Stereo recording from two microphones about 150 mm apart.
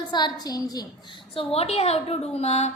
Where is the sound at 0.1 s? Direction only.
30° left (ahead or behind).